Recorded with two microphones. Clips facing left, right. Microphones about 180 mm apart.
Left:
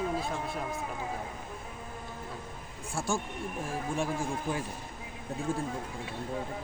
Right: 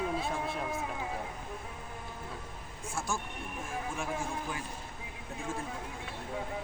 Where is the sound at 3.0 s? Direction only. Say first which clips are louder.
Left 5 dB; 30° left (ahead or behind).